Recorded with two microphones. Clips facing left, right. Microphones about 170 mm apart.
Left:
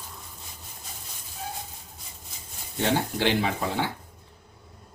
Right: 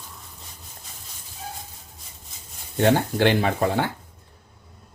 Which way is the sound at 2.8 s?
55° right (ahead or behind).